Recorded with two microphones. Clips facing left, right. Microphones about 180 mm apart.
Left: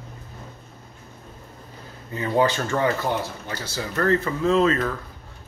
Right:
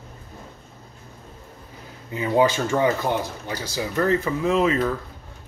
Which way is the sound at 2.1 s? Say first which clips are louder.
Right 2 dB; 15° right (ahead or behind).